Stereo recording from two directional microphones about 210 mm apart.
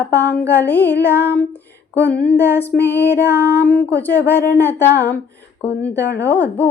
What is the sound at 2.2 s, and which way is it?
Music, 10° left (ahead or behind).